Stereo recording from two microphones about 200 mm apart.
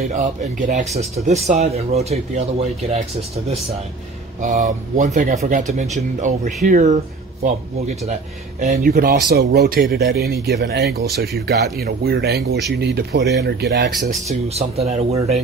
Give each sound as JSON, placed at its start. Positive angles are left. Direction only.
{"t": 0.1, "sound": "speech", "side_deg": -40}
{"t": 4.4, "sound": "speech", "side_deg": -40}
{"t": 8.8, "sound": "speech", "side_deg": -50}
{"t": 14.5, "sound": "speech", "side_deg": -30}